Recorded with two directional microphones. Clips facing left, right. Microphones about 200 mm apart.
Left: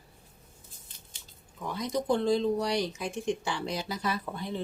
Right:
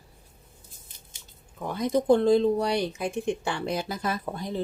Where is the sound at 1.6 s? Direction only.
55° right (ahead or behind); by 4.6 s 40° right (ahead or behind).